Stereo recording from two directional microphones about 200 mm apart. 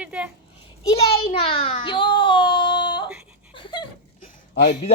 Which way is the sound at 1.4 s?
30° left (ahead or behind).